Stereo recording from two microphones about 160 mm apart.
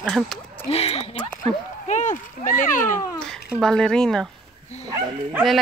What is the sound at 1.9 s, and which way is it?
Speech, 50° left (ahead or behind).